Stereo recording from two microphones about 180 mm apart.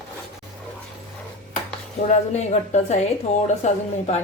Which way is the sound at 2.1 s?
40° left (ahead or behind).